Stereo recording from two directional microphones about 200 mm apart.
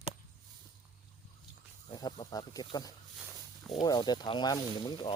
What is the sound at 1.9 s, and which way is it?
Speech, 20° left (ahead or behind).